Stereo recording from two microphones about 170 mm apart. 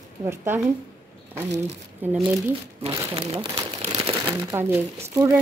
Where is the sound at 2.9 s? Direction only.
20° right (ahead or behind).